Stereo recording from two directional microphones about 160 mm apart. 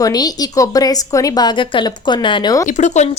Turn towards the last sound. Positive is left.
turn(degrees=45)  # may be behind; listen again after turning